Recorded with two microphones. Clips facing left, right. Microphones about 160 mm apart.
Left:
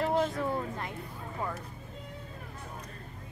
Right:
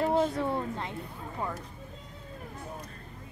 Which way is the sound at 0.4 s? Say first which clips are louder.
Right 2 dB; 25° right (ahead or behind).